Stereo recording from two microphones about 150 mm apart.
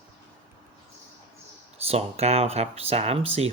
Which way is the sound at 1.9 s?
45° right (ahead or behind).